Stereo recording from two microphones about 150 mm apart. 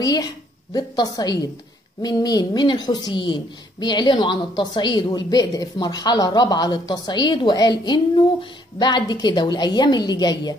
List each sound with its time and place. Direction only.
0.0 s a woman's voice: 25° left (ahead or behind)